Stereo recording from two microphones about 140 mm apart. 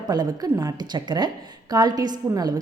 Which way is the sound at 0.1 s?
30° right (ahead or behind).